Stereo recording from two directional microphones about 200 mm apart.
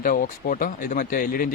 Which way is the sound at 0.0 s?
45° left (ahead or behind).